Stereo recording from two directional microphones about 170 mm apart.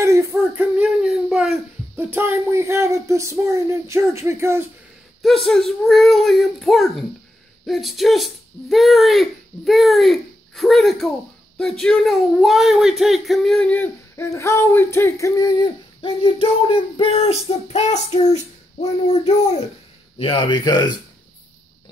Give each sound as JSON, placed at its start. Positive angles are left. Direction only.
{"t": 0.0, "sound": "a sound", "side_deg": -15}
{"t": 2.1, "sound": "speech", "side_deg": -15}
{"t": 5.2, "sound": "speech", "side_deg": 0}